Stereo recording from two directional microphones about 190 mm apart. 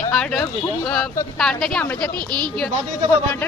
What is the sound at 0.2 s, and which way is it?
Speech, 5° left (ahead or behind).